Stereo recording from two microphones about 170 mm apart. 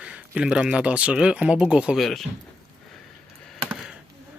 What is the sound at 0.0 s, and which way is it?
Speech, 5° right (ahead or behind).